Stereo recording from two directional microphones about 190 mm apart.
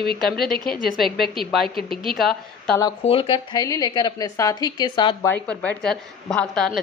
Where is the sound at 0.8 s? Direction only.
Centre (ahead or behind).